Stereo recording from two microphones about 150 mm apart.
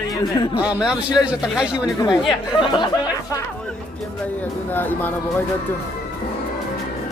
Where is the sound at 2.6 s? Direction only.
35° left (ahead or behind).